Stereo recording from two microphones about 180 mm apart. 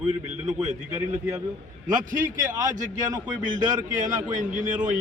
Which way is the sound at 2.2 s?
20° right (ahead or behind).